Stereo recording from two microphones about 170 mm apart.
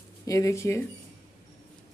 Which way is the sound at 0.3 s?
20° left (ahead or behind).